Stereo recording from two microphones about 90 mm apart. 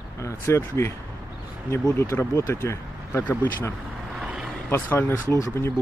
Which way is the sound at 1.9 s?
30° left (ahead or behind).